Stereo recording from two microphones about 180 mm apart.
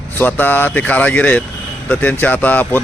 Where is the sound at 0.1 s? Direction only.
10° left (ahead or behind).